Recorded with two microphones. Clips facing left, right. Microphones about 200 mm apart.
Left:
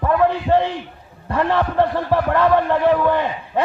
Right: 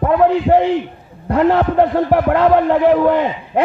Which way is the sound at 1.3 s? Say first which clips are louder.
Right 5 dB; 20° right (ahead or behind).